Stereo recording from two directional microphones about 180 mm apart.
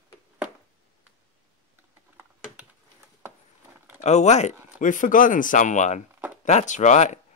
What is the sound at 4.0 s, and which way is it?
Speech, 40° left (ahead or behind).